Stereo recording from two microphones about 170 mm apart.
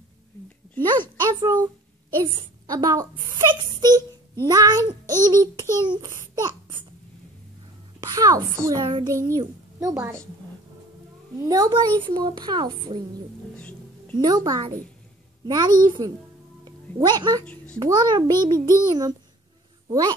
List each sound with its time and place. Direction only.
0.8 s a child's voice: 25° right (ahead or behind)
8.0 s a child's voice: 20° right (ahead or behind)
11.4 s a child's voice: 20° right (ahead or behind)
13.6 s music: 5° left (ahead or behind)
14.1 s a child's voice: 25° right (ahead or behind)